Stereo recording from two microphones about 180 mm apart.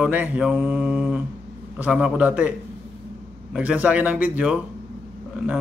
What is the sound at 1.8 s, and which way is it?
Speech, 5° right (ahead or behind).